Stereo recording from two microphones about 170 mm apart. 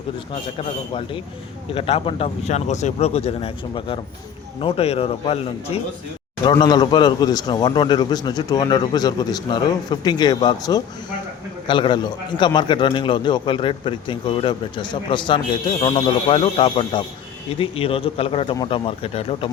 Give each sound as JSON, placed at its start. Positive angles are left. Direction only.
{"t": 0.6, "sound": "speech", "side_deg": 30}
{"t": 6.4, "sound": "a man's voice", "side_deg": 25}